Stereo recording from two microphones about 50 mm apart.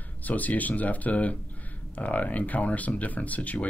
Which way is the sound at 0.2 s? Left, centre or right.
Left.